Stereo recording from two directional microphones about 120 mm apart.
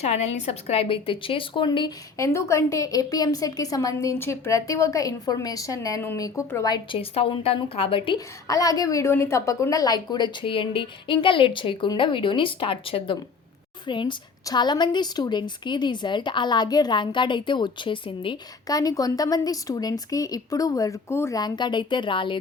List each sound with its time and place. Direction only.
0.0 s a woman's voice: 65° left (ahead or behind); by 1.9 s 40° left (ahead or behind)
2.1 s a woman's voice: 25° left (ahead or behind)
7.0 s a woman's voice: 50° left (ahead or behind)
8.4 s a woman's voice: 30° left (ahead or behind)
18.7 s a woman's voice: 30° left (ahead or behind)
21.4 s a woman's voice: 40° left (ahead or behind)